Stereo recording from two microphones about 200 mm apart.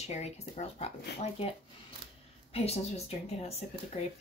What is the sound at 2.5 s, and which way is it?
Speech, 30° left (ahead or behind).